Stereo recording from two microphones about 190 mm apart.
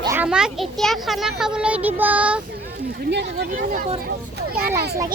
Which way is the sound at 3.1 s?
60° right (ahead or behind).